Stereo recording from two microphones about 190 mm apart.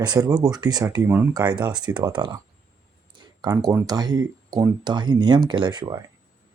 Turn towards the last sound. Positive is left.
turn(degrees=-25)  # may be behind; listen again after turning